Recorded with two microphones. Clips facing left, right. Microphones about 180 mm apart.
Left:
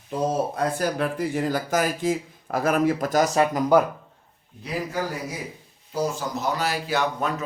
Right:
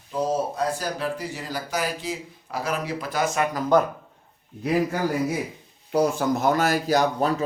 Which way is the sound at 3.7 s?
10° left (ahead or behind).